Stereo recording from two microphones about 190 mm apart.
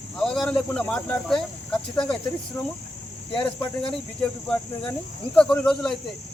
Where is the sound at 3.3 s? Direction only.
25° left (ahead or behind).